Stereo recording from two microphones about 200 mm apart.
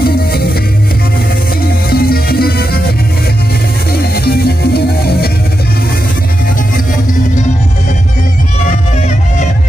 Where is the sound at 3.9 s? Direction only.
50° left (ahead or behind).